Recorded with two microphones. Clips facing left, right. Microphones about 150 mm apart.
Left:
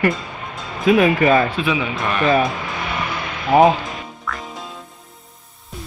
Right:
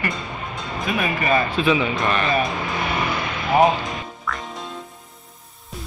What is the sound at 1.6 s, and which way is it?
Speech, 10° left (ahead or behind).